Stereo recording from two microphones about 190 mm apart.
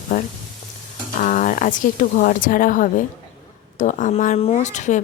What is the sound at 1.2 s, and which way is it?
Speech, 45° left (ahead or behind).